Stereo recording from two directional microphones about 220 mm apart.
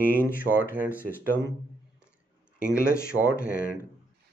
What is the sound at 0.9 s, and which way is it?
Speech, 10° right (ahead or behind).